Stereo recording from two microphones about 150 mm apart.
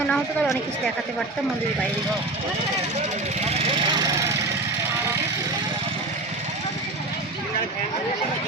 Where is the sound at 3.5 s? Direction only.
40° right (ahead or behind).